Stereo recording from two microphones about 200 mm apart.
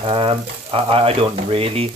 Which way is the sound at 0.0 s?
30° right (ahead or behind).